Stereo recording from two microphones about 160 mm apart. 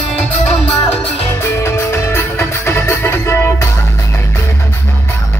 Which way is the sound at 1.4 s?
15° left (ahead or behind).